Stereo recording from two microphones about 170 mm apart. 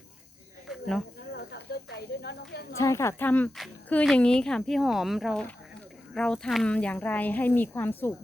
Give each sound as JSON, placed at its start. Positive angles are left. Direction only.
{"t": 0.7, "sound": "cricket", "side_deg": 5}
{"t": 1.5, "sound": "snake", "side_deg": 80}
{"t": 2.7, "sound": "speech", "side_deg": 15}